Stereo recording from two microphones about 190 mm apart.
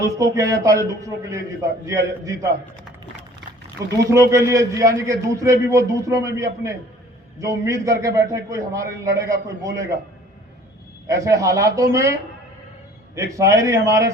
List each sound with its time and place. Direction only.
0.0 s a man's voice: 15° right (ahead or behind)
4.1 s a man's voice: 15° right (ahead or behind)
11.0 s a man's voice: 15° right (ahead or behind)
13.1 s a man's voice: 15° right (ahead or behind)